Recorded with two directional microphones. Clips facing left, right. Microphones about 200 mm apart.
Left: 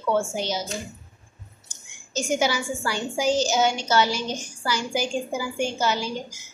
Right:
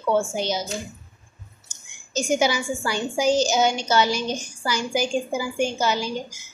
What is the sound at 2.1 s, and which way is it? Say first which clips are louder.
A woman's voice: right 2 dB; 15° right (ahead or behind).